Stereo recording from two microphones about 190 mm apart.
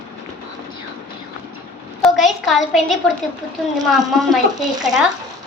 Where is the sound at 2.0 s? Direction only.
Centre (ahead or behind).